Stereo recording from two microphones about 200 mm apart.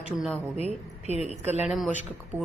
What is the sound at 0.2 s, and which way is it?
Speech, centre (ahead or behind).